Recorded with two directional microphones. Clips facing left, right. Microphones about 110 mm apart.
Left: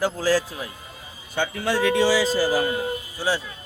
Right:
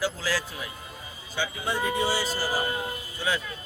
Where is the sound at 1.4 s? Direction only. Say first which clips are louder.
Left 6 dB; 70° left (ahead or behind); by 2.3 s 90° left.